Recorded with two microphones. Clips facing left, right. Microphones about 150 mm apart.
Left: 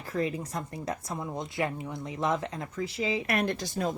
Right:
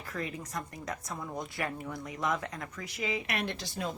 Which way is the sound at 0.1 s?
30° left (ahead or behind).